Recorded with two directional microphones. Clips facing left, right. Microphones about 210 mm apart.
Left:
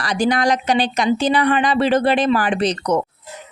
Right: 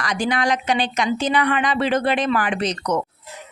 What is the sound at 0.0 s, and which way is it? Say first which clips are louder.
A woman's voice: left 4 dB; 35° left (ahead or behind).